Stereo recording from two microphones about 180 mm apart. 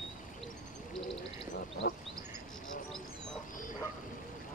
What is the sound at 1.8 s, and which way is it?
Bird, 55° left (ahead or behind).